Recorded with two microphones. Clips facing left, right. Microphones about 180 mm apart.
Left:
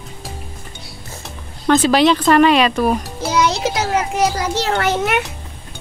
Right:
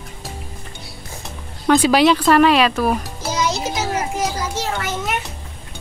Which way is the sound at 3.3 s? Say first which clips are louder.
Left 4 dB; 65° left (ahead or behind).